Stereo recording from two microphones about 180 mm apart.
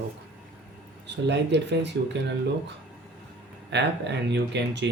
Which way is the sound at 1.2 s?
70° right (ahead or behind).